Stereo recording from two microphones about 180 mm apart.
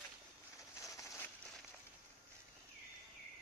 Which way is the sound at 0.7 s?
15° left (ahead or behind).